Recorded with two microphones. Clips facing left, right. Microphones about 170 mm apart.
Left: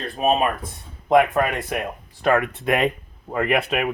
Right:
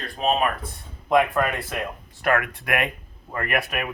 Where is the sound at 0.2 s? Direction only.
20° left (ahead or behind).